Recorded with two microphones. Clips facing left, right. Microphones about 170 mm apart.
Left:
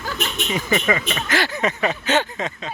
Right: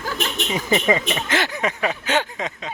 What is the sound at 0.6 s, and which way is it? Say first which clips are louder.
Speech: right 3 dB; 20° right (ahead or behind).